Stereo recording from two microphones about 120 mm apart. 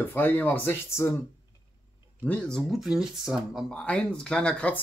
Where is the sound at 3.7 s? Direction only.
10° left (ahead or behind).